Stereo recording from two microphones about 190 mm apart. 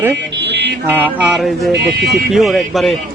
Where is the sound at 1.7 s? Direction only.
60° right (ahead or behind).